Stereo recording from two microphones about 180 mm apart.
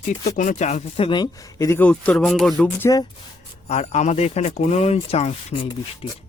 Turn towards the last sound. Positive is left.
turn(degrees=35)  # may be behind; listen again after turning